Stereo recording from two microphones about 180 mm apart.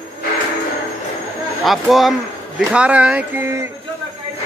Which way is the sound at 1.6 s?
Centre (ahead or behind).